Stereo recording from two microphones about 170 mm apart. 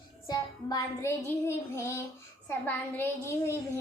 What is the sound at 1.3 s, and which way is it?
Speech, 15° left (ahead or behind).